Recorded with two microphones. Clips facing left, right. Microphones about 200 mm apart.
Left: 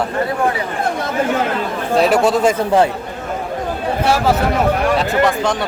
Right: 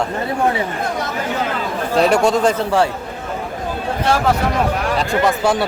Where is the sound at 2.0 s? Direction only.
5° left (ahead or behind).